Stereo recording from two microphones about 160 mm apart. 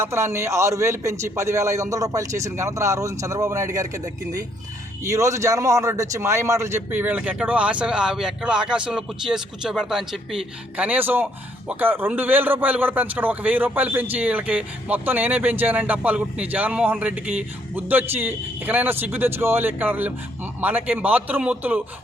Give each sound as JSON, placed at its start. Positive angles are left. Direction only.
{"t": 0.0, "sound": "a man's voice", "side_deg": -15}